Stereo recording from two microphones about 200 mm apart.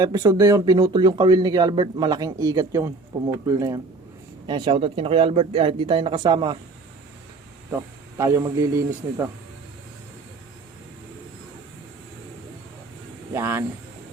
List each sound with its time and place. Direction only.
0.0 s speech: 20° right (ahead or behind)
4.4 s speech: 25° right (ahead or behind)
7.8 s speech: 15° right (ahead or behind)
13.3 s speech: 10° right (ahead or behind)